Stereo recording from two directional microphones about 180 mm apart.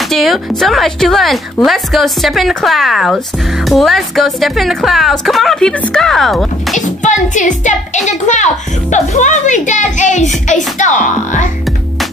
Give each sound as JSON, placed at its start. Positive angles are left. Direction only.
{"t": 0.1, "sound": "a woman's voice", "side_deg": 0}
{"t": 6.7, "sound": "a woman's voice", "side_deg": 40}